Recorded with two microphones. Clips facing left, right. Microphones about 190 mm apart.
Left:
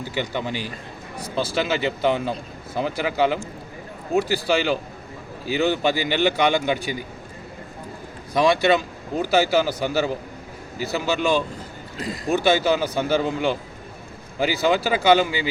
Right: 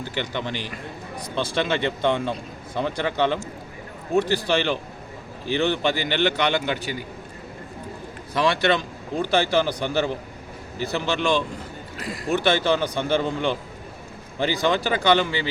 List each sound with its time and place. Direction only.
0.0 s a man's voice: 10° left (ahead or behind)
5.5 s a man's voice: 5° left (ahead or behind)
8.3 s a man's voice: 15° left (ahead or behind)
11.9 s speech: 20° left (ahead or behind)
12.3 s a man's voice: 10° left (ahead or behind)